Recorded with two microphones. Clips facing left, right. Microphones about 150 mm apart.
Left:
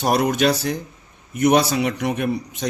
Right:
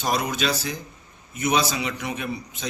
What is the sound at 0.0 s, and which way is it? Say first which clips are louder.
A man's voice: left 7 dB; 60° left (ahead or behind).